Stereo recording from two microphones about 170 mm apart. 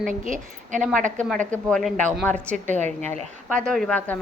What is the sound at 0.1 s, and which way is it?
Speech, 50° right (ahead or behind).